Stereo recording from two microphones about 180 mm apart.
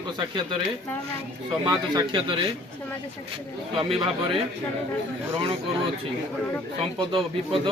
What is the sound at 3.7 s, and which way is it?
Speech, 25° right (ahead or behind).